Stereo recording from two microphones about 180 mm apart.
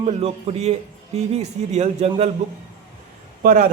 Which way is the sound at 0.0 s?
35° right (ahead or behind).